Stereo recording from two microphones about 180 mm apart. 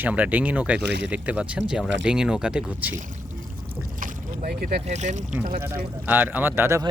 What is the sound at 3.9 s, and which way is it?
Boat, 50° right (ahead or behind).